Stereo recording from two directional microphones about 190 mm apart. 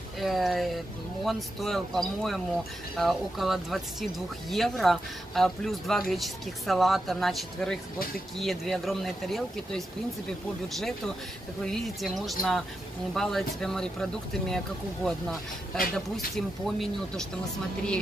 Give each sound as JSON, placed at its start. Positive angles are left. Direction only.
{"t": 0.2, "sound": "speech", "side_deg": 0}
{"t": 11.6, "sound": "speech", "side_deg": 0}
{"t": 15.0, "sound": "speech", "side_deg": 0}